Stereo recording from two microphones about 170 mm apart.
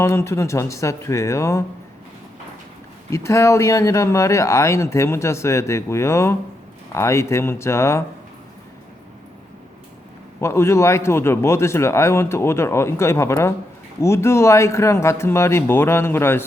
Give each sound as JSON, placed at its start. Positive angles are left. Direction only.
{"t": 0.0, "sound": "speech", "side_deg": 15}
{"t": 3.1, "sound": "speech", "side_deg": 15}
{"t": 10.4, "sound": "speech", "side_deg": 15}